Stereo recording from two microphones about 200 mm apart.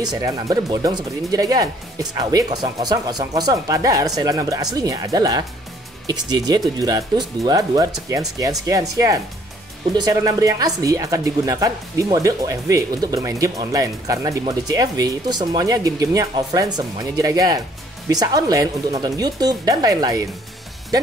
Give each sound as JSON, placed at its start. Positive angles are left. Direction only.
{"t": 0.0, "sound": "speech", "side_deg": -20}